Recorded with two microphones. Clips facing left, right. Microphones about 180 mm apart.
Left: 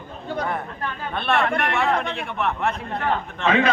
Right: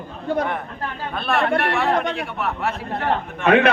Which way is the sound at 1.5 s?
35° right (ahead or behind).